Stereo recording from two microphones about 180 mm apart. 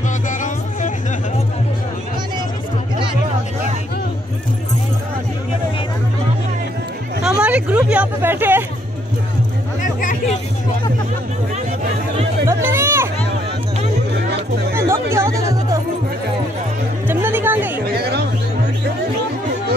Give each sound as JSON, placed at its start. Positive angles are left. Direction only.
{"t": 0.3, "sound": "music", "side_deg": 45}
{"t": 7.2, "sound": "hubbub", "side_deg": -5}
{"t": 12.4, "sound": "a sound", "side_deg": -15}
{"t": 14.7, "sound": "music", "side_deg": -15}
{"t": 17.1, "sound": "music", "side_deg": -10}
{"t": 17.9, "sound": "music", "side_deg": -65}